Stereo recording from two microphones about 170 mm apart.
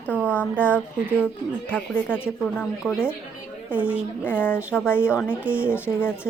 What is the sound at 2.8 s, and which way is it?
Speech, centre (ahead or behind).